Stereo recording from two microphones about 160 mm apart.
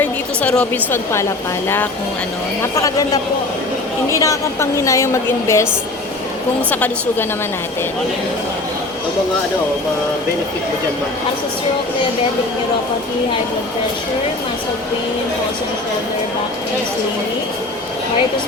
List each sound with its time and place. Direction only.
0.0 s a woman's voice: 10° left (ahead or behind)
2.6 s a woman's voice: 20° left (ahead or behind)
6.7 s a woman's voice: 10° left (ahead or behind)